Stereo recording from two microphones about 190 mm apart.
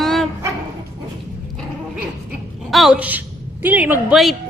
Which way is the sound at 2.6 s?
Centre (ahead or behind).